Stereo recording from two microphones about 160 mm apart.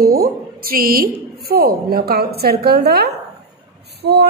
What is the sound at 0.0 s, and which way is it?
A woman's voice, 70° right (ahead or behind).